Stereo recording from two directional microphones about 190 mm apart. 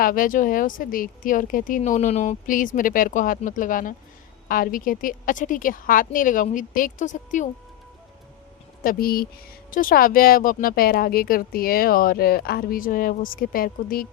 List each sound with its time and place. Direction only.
0.0 s speech: 45° left (ahead or behind)
8.8 s speech: 50° left (ahead or behind)